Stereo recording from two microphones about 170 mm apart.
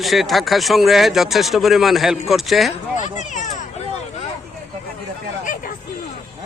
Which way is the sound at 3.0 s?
45° left (ahead or behind).